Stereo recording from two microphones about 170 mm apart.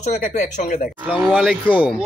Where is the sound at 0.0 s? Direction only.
45° left (ahead or behind).